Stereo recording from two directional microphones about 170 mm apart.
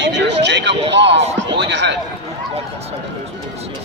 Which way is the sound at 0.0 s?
90° right.